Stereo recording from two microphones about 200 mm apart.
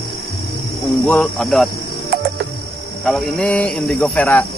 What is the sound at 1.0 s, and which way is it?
Speech, 5° left (ahead or behind).